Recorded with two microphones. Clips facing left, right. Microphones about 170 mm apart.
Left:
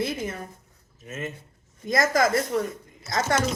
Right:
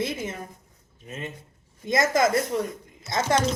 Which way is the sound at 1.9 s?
25° right (ahead or behind).